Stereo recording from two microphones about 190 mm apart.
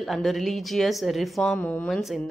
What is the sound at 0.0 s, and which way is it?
A woman's voice, centre (ahead or behind).